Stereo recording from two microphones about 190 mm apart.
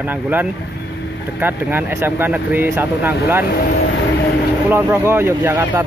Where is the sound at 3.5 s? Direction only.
55° left (ahead or behind).